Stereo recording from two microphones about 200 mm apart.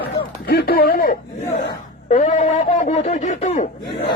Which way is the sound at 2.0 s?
35° left (ahead or behind).